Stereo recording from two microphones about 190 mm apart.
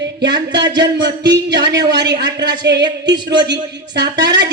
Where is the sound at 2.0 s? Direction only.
65° right (ahead or behind).